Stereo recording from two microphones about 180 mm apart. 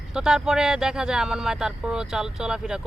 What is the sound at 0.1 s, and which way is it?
Speech, 5° right (ahead or behind).